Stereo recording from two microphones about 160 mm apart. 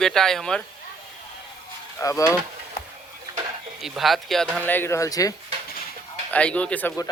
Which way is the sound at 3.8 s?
Centre (ahead or behind).